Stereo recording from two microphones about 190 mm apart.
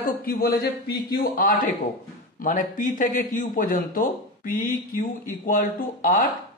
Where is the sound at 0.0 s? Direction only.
50° left (ahead or behind).